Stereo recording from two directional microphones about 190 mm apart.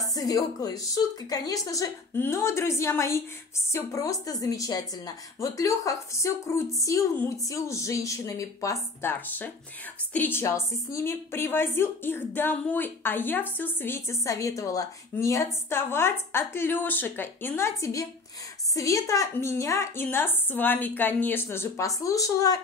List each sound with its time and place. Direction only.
0.0 s a woman's voice: 20° left (ahead or behind)